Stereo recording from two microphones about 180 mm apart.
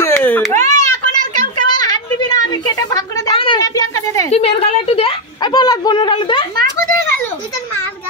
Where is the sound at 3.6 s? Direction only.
20° left (ahead or behind).